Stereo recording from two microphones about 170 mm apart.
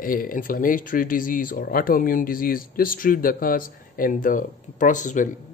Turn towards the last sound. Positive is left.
turn(degrees=45)  # may be behind; listen again after turning